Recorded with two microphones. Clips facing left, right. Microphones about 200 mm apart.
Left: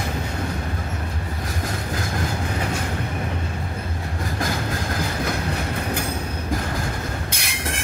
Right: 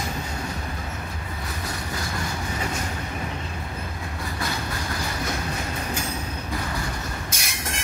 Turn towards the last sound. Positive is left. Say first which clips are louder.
# left 3 dB
turn(degrees=60)  # may be behind; listen again after turning